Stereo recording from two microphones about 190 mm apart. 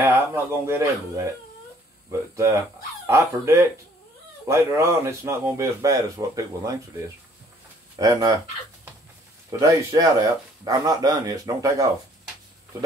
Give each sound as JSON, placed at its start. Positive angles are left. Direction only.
{"t": 0.0, "sound": "speech", "side_deg": -10}
{"t": 8.0, "sound": "speech", "side_deg": -20}
{"t": 9.5, "sound": "speech", "side_deg": -20}